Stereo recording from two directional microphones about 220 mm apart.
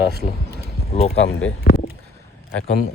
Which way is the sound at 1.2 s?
60° left (ahead or behind).